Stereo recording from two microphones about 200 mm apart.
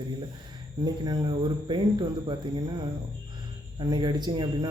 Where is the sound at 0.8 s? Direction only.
20° right (ahead or behind).